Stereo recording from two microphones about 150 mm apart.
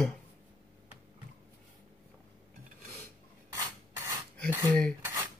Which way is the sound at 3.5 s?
20° right (ahead or behind).